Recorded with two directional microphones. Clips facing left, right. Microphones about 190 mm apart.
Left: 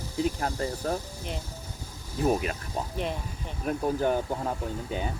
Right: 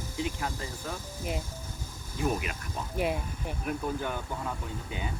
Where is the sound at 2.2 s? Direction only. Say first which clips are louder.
Left 5 dB; 40° left (ahead or behind).